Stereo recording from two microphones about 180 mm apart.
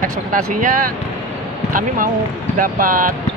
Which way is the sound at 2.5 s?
50° right (ahead or behind).